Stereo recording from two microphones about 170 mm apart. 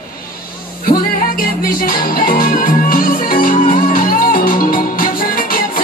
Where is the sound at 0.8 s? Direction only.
55° left (ahead or behind).